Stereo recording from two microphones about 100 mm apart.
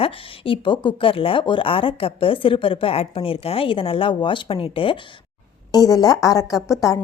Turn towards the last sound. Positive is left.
turn(degrees=35)  # may be behind; listen again after turning